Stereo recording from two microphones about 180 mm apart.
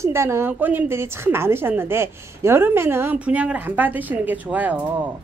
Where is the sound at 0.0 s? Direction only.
15° right (ahead or behind).